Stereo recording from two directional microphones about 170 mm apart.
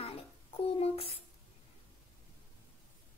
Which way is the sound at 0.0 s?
35° left (ahead or behind).